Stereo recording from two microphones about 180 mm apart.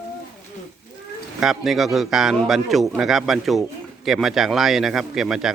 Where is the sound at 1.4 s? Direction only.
Centre (ahead or behind).